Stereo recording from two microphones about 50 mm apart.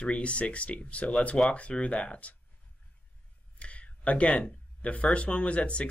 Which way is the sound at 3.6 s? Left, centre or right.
Left.